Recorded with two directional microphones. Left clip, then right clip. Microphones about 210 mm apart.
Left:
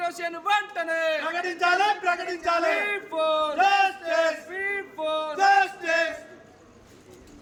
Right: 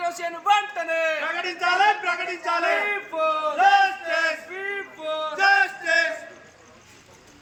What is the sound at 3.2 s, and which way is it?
Speech, 10° left (ahead or behind).